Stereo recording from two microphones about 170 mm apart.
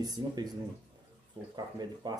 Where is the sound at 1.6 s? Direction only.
25° right (ahead or behind).